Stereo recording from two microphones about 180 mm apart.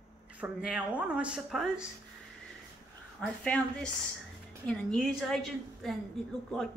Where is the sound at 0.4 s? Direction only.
5° right (ahead or behind).